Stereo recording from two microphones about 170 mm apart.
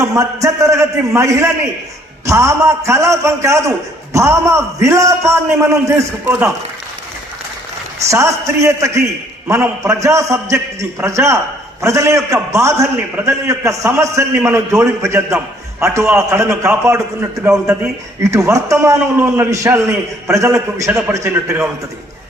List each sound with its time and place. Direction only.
0.0 s a man's voice: 20° right (ahead or behind)
8.1 s a man's voice: 15° right (ahead or behind)